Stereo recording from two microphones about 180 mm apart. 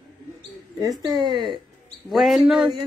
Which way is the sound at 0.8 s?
25° right (ahead or behind).